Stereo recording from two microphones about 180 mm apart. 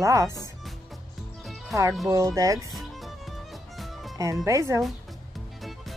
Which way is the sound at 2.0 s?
15° right (ahead or behind).